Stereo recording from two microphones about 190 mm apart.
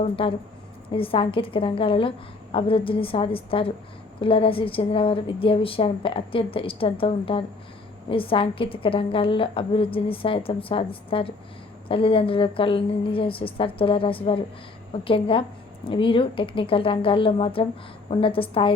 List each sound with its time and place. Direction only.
0.0 s a woman's voice: 30° left (ahead or behind)